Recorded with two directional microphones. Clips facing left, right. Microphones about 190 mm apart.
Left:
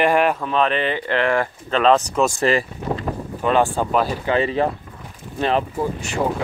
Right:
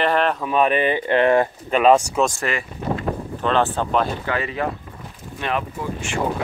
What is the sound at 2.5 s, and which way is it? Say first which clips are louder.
Speech: left 7 dB; 30° left (ahead or behind).